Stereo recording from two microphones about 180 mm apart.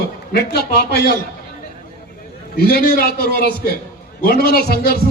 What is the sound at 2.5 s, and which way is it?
A man's voice, 60° left (ahead or behind).